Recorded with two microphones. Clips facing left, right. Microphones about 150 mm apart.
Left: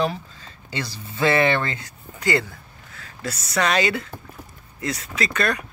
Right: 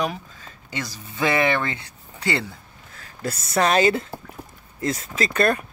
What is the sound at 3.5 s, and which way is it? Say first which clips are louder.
Speech: right 3 dB; 40° right (ahead or behind).